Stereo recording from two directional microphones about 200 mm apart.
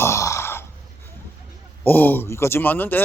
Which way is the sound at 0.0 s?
15° left (ahead or behind).